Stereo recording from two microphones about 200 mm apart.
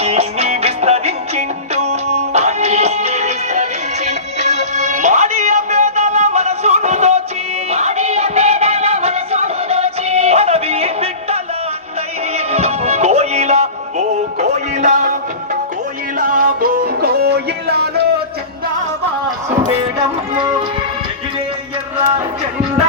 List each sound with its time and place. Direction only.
0.0 s music: 30° right (ahead or behind)
12.5 s music: 30° right (ahead or behind)
16.1 s music: 45° right (ahead or behind)
20.3 s music: 25° right (ahead or behind)